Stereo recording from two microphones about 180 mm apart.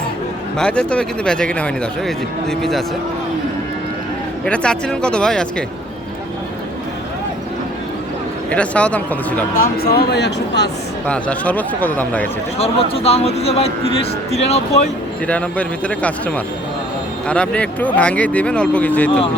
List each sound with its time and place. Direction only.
0.6 s speech: 5° left (ahead or behind)
4.4 s speech: 5° left (ahead or behind)
8.4 s speech: 5° left (ahead or behind)
9.6 s speech: 60° left (ahead or behind)
11.0 s speech: 5° left (ahead or behind)
12.5 s a man's voice: 35° left (ahead or behind)
15.3 s speech: 5° left (ahead or behind)